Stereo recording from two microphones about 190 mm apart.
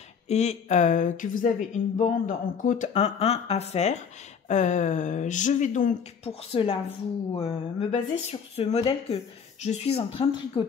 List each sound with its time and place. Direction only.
0.3 s speech: 35° left (ahead or behind)